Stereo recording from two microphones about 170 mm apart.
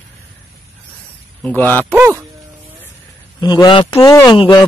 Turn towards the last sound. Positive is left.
turn(degrees=25)  # may be behind; listen again after turning